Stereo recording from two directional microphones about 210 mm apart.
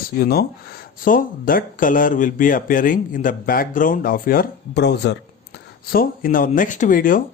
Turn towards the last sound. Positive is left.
turn(degrees=40)  # may be behind; listen again after turning